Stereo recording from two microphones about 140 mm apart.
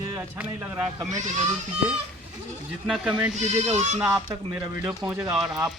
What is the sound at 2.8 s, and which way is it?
Speech, centre (ahead or behind).